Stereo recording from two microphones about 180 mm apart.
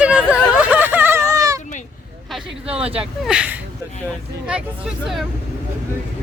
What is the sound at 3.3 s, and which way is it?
Speech, 5° right (ahead or behind).